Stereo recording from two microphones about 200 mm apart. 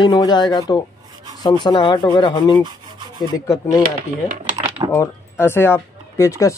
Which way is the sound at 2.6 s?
20° right (ahead or behind).